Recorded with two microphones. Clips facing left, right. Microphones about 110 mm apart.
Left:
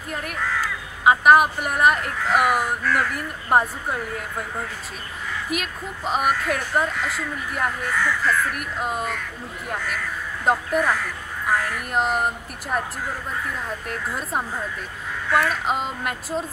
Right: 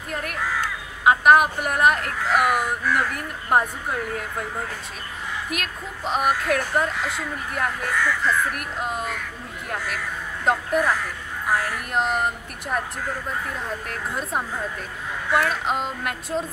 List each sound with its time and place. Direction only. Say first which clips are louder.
0.1 s a woman's voice: even; centre (ahead or behind)
5.5 s a woman's voice: left 2 dB; centre (ahead or behind)
10.4 s a woman's voice: even; centre (ahead or behind)
13.8 s a woman's voice: even; centre (ahead or behind)